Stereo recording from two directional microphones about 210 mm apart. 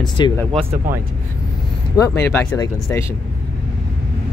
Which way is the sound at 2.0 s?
15° left (ahead or behind).